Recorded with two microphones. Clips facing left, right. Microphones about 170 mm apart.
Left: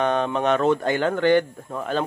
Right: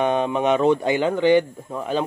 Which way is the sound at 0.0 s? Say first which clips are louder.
Right 1 dB; 5° right (ahead or behind).